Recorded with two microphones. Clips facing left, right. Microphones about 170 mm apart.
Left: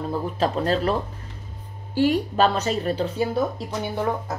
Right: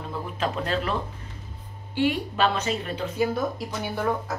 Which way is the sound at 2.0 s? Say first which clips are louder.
Left 4 dB; 40° left (ahead or behind).